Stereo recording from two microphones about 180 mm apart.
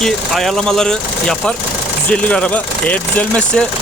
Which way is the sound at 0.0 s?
Centre (ahead or behind).